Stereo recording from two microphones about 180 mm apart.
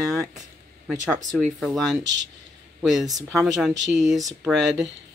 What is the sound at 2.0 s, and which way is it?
Speech, 90° right.